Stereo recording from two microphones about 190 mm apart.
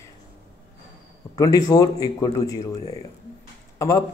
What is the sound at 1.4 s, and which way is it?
Speech, 20° left (ahead or behind).